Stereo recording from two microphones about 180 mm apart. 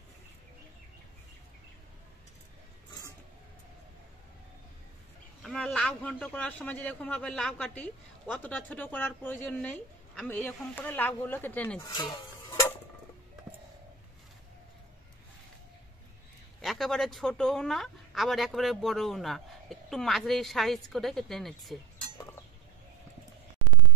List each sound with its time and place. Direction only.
5.4 s a man's voice: 5° left (ahead or behind)
11.8 s dishes: 20° left (ahead or behind)
16.6 s speech: centre (ahead or behind)